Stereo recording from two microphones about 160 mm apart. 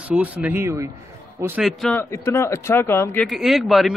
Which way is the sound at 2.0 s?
15° left (ahead or behind).